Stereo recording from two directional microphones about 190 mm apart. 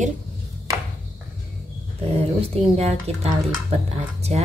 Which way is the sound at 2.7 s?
35° right (ahead or behind).